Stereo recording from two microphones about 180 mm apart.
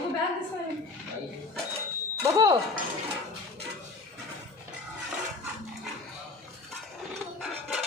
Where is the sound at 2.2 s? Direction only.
20° right (ahead or behind).